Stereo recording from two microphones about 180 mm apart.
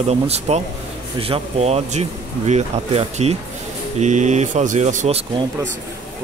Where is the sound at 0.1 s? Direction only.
35° right (ahead or behind).